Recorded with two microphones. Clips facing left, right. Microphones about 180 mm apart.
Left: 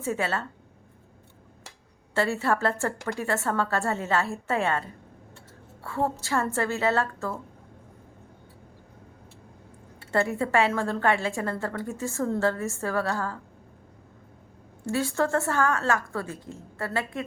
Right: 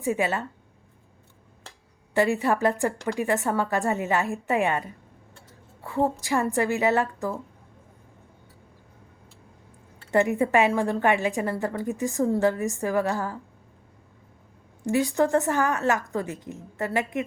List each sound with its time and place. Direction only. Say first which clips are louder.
0.0 s a woman's voice: right 3 dB; 15° right (ahead or behind)
2.1 s a woman's voice: right 3 dB; 15° right (ahead or behind)
10.1 s a woman's voice: right 4 dB; 15° right (ahead or behind)
14.8 s a woman's voice: right 4 dB; 15° right (ahead or behind)